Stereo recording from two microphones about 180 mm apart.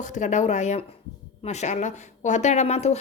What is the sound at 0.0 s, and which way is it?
Speech, 40° left (ahead or behind).